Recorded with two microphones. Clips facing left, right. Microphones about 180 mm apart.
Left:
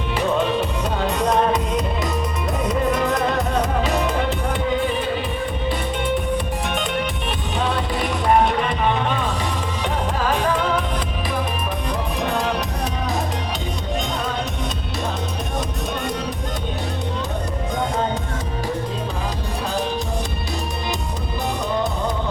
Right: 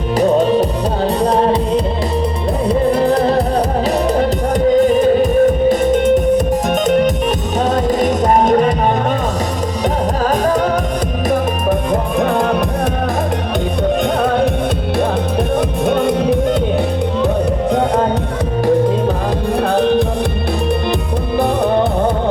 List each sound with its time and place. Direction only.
0.2 s music: 40° right (ahead or behind)
10.2 s music: 40° right (ahead or behind)
12.2 s music: 50° right (ahead or behind)
14.2 s music: 55° right (ahead or behind)
15.5 s music: 55° right (ahead or behind)
17.7 s music: 65° right (ahead or behind)
19.6 s music: 60° right (ahead or behind)
21.3 s music: 55° right (ahead or behind)